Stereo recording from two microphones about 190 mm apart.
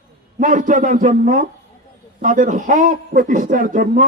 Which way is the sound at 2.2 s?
45° right (ahead or behind).